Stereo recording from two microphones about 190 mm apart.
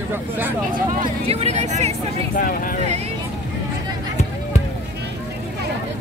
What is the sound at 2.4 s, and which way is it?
Speech, 45° left (ahead or behind).